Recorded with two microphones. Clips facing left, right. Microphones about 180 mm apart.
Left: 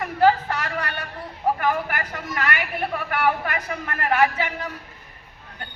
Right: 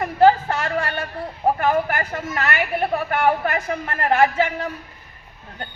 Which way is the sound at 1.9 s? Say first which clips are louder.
Right 4 dB; 25° right (ahead or behind).